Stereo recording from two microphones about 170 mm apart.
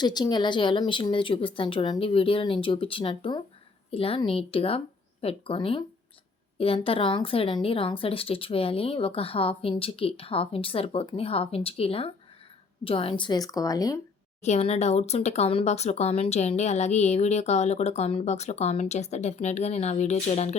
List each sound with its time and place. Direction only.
0.0 s speech: 25° left (ahead or behind)
14.4 s speech: 40° left (ahead or behind)